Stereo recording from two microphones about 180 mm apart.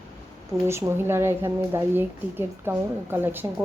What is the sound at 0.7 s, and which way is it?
Speech, 15° right (ahead or behind).